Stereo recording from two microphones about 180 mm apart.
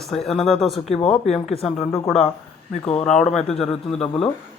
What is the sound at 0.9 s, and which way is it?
Speech, 30° left (ahead or behind).